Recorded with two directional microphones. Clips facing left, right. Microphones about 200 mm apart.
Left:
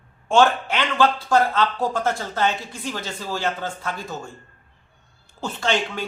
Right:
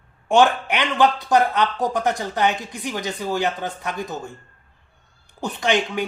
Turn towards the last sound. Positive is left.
turn(degrees=-15)  # may be behind; listen again after turning